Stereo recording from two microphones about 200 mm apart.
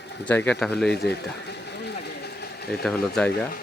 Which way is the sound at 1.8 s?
55° left (ahead or behind).